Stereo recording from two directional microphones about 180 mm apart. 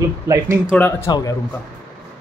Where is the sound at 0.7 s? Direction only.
10° left (ahead or behind).